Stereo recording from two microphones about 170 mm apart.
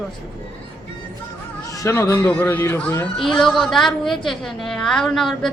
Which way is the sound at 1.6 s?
20° left (ahead or behind).